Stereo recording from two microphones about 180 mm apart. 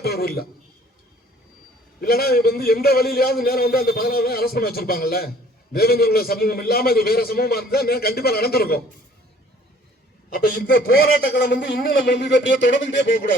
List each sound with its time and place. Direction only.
0.0 s a man's voice: 60° left (ahead or behind)
2.0 s a man's voice: 60° left (ahead or behind)
10.2 s a man's voice: 55° left (ahead or behind); by 13.3 s 85° left